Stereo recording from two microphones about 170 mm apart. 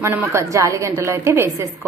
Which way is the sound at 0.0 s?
15° right (ahead or behind).